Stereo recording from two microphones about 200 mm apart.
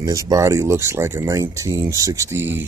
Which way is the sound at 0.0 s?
15° right (ahead or behind).